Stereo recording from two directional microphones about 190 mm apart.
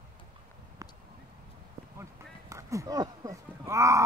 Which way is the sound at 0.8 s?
15° right (ahead or behind).